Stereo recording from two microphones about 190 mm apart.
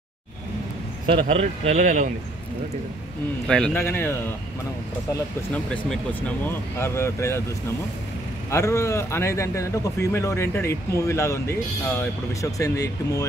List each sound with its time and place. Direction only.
1.0 s a man's voice: 30° right (ahead or behind)
3.4 s a man's voice: 5° left (ahead or behind)
6.4 s a man's voice: 10° left (ahead or behind)
8.5 s a man's voice: 15° left (ahead or behind)